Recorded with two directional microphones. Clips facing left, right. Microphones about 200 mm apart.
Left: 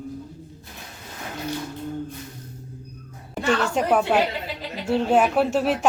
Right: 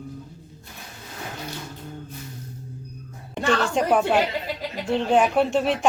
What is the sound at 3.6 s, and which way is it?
Speech, 5° left (ahead or behind).